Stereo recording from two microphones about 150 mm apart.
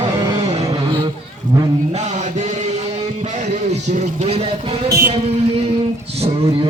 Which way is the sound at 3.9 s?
45° right (ahead or behind).